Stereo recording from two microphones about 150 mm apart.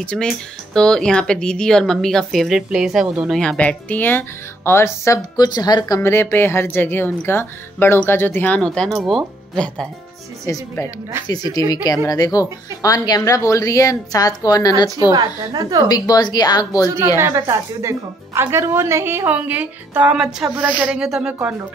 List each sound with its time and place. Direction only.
0.0 s a woman's voice: 5° left (ahead or behind); by 5.9 s 25° left (ahead or behind)
5.9 s speech: 15° left (ahead or behind)
10.4 s speech: 20° left (ahead or behind)
15.1 s a woman's voice: 25° right (ahead or behind)
15.9 s speech: 25° left (ahead or behind)
17.2 s a woman's voice: 20° right (ahead or behind)